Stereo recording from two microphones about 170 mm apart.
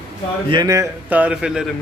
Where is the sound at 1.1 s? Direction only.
5° right (ahead or behind).